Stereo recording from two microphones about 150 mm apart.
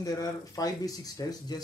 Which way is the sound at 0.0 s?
25° left (ahead or behind).